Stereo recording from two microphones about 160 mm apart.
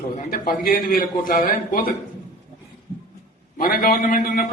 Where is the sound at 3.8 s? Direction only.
60° left (ahead or behind).